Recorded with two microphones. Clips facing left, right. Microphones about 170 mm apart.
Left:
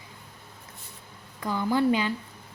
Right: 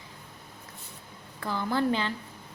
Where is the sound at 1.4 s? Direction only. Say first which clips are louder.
Left 3 dB; 10° left (ahead or behind).